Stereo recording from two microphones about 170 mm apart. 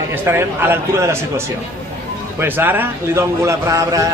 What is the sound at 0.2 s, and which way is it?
A man's voice, 10° right (ahead or behind).